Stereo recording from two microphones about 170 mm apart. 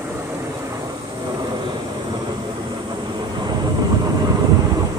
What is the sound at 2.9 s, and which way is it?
Vehicle, 25° right (ahead or behind).